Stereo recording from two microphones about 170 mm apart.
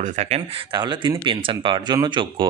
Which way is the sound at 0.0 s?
45° right (ahead or behind).